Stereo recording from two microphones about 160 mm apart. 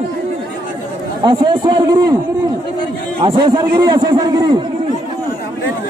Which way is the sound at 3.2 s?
30° right (ahead or behind).